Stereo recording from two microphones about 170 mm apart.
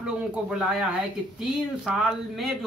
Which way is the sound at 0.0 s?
5° right (ahead or behind).